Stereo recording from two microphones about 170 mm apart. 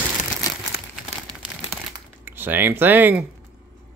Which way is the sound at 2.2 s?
10° right (ahead or behind).